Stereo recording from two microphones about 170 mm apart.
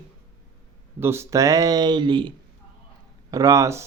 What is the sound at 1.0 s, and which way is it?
Speech, 15° right (ahead or behind).